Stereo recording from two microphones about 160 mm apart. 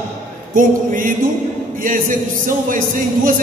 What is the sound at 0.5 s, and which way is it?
A man's voice, 60° right (ahead or behind).